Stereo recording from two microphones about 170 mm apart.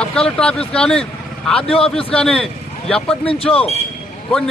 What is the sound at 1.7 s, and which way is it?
Speech, 35° left (ahead or behind).